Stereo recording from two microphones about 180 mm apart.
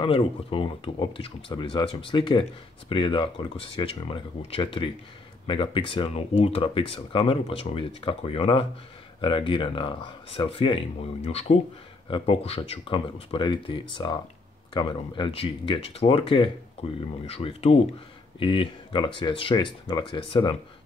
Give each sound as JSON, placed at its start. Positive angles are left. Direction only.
{"t": 0.0, "sound": "speech", "side_deg": 30}